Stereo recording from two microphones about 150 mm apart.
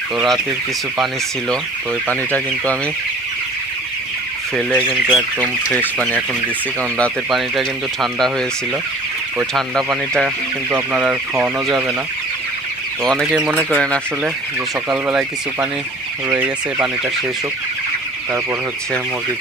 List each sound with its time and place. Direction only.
2.0 s speech: 10° left (ahead or behind)
4.6 s speech: 10° left (ahead or behind)
4.9 s speech: 5° right (ahead or behind)
5.4 s speech: 10° left (ahead or behind)
7.0 s speech: centre (ahead or behind)
9.5 s speech: centre (ahead or behind)
10.7 s speech: 10° right (ahead or behind)
13.0 s speech: centre (ahead or behind)
13.3 s speech: 10° right (ahead or behind)
13.7 s speech: 5° left (ahead or behind)
14.9 s speech: 5° right (ahead or behind)